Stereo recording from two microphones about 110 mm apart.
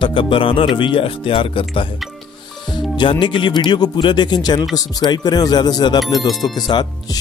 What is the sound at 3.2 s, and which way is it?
Speech, 45° left (ahead or behind).